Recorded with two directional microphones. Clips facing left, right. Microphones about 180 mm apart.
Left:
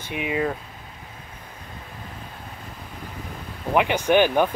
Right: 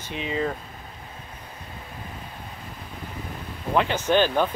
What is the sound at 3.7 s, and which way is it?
Speech, 15° left (ahead or behind).